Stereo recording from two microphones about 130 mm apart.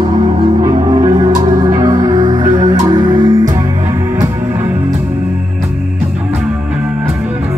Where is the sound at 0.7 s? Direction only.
40° right (ahead or behind).